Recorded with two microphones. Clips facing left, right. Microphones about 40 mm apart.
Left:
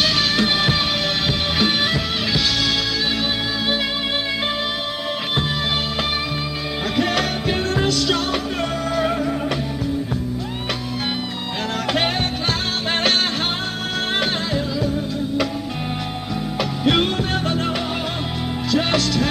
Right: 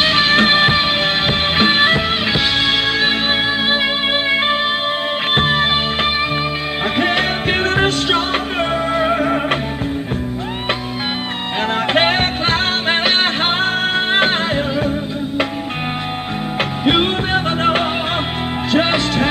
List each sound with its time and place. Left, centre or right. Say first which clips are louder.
0.0 s music: right 6 dB; right
5.3 s music: right 9 dB; right
7.0 s music: right 3 dB; right
7.5 s music: right 5 dB; right
9.2 s music: right 5 dB; right
11.9 s music: right 5 dB; right
16.8 s music: right 3 dB; right